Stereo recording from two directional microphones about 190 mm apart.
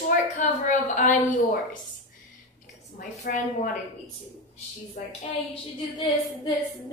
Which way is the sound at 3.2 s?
45° left (ahead or behind).